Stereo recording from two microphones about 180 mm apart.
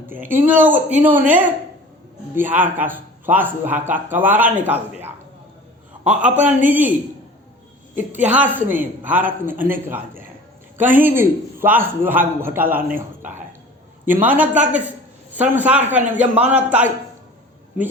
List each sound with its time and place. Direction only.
0.2 s a woman's voice: 50° right (ahead or behind)
0.4 s a man's voice: 10° right (ahead or behind)
6.4 s a man's voice: 10° right (ahead or behind)
7.9 s a man's voice: 10° right (ahead or behind)